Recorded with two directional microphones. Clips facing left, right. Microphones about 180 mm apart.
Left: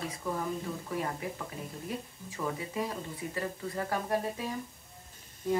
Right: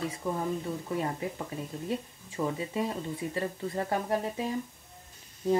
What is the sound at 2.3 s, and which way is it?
Speech, 25° right (ahead or behind).